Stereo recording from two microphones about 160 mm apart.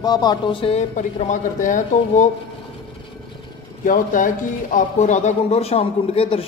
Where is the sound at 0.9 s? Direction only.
50° left (ahead or behind).